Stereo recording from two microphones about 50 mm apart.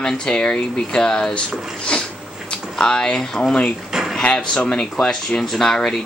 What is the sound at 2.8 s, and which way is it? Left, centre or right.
Speech, centre.